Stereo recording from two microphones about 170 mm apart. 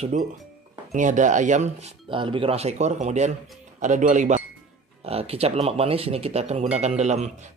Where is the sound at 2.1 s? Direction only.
30° right (ahead or behind).